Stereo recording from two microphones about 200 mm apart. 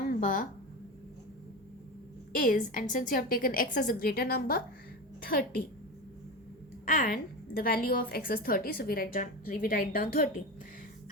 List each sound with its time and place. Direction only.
0.1 s a sound: 45° left (ahead or behind)
2.3 s a woman's voice: 40° left (ahead or behind)
6.8 s a woman's voice: 45° left (ahead or behind)